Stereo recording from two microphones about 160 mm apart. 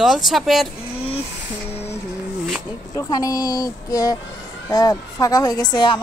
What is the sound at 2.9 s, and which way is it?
A woman's voice, 20° left (ahead or behind).